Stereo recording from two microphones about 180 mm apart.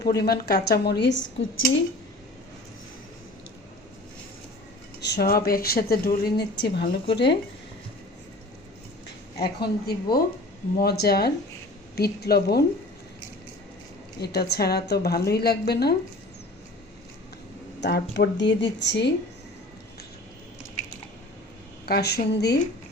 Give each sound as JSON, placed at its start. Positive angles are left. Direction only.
{"t": 0.0, "sound": "a woman's voice", "side_deg": 60}
{"t": 1.0, "sound": "a woman's voice", "side_deg": 90}
{"t": 5.0, "sound": "a woman's voice", "side_deg": 60}
{"t": 9.4, "sound": "a woman's voice", "side_deg": 60}
{"t": 14.2, "sound": "a woman's voice", "side_deg": 65}
{"t": 17.7, "sound": "speech", "side_deg": 70}
{"t": 21.8, "sound": "a woman's voice", "side_deg": 60}